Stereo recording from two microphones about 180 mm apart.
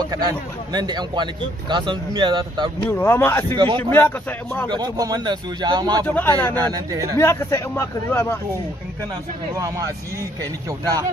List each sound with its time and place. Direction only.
0.0 s speech: 20° right (ahead or behind)
2.9 s speech: 15° left (ahead or behind)
3.5 s speech: 25° right (ahead or behind)
3.9 s speech: 10° left (ahead or behind)
4.6 s speech: 25° right (ahead or behind)
6.0 s speech: 10° left (ahead or behind)
6.6 s speech: 20° right (ahead or behind)
7.2 s speech: 15° left (ahead or behind)